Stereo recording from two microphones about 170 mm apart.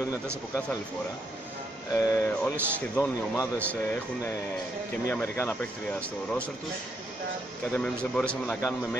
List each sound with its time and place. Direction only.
2.0 s speech: 15° left (ahead or behind)
7.7 s speech: 5° left (ahead or behind)